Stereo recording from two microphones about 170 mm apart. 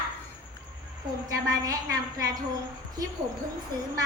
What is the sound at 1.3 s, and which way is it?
Speech, 20° right (ahead or behind).